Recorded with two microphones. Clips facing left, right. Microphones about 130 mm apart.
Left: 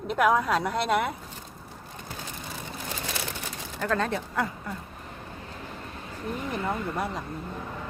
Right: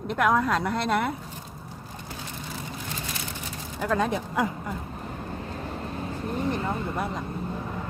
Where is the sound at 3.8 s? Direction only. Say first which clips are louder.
Right 2 dB; 10° right (ahead or behind).